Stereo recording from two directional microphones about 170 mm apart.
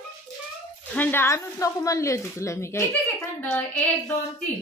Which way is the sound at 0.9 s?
10° left (ahead or behind).